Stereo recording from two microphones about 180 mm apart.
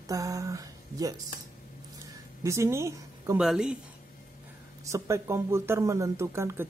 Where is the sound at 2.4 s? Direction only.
15° right (ahead or behind).